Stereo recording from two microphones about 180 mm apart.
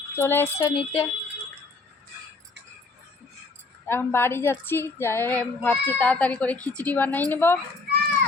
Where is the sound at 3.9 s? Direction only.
15° left (ahead or behind).